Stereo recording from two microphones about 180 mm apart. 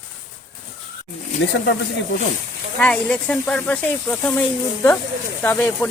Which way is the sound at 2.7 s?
5° left (ahead or behind).